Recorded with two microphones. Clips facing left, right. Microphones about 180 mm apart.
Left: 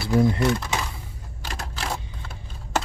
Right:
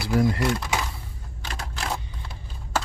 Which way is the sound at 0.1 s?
25° left (ahead or behind).